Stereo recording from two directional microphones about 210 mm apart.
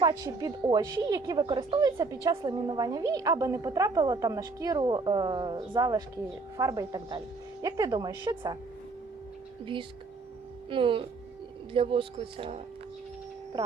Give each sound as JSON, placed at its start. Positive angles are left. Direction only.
{"t": 0.0, "sound": "a woman's voice", "side_deg": -15}
{"t": 10.7, "sound": "speech", "side_deg": -25}